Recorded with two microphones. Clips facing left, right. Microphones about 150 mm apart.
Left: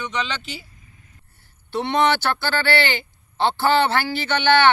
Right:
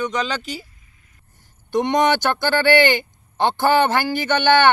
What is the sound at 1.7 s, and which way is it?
A man's voice, 15° right (ahead or behind).